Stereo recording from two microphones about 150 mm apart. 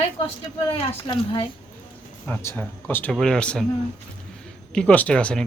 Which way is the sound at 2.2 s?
15° left (ahead or behind).